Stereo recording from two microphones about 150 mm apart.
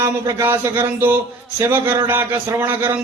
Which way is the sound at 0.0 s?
20° right (ahead or behind).